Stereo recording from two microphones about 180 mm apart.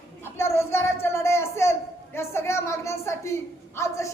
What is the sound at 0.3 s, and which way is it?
Child singing, 15° left (ahead or behind).